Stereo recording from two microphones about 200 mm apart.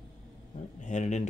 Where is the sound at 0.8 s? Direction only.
35° left (ahead or behind).